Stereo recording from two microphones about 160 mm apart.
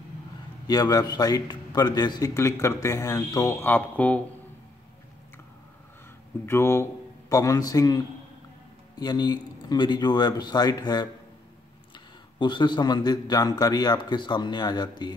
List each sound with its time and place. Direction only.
0.7 s a man's voice: 25° left (ahead or behind)
6.4 s a man's voice: 15° left (ahead or behind)
12.4 s a man's voice: 30° left (ahead or behind)